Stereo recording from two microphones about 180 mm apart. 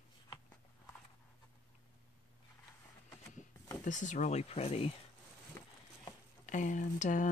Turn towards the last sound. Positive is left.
turn(degrees=45)  # may be behind; listen again after turning